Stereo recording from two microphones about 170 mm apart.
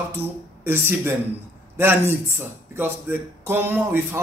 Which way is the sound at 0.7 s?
15° right (ahead or behind).